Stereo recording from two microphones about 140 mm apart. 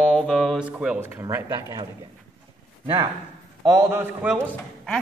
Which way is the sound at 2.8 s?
35° right (ahead or behind).